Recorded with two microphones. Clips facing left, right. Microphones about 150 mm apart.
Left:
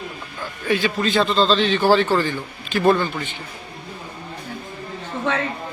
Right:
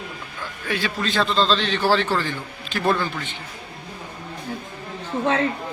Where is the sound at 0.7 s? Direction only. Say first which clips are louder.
Left 5 dB; centre (ahead or behind).